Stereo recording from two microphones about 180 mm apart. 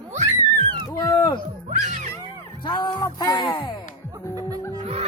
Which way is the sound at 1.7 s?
45° right (ahead or behind).